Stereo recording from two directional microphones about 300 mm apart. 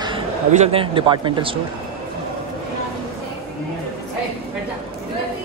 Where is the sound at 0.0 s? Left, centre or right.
Centre.